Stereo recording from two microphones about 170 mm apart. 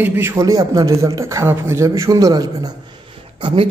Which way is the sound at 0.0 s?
10° right (ahead or behind).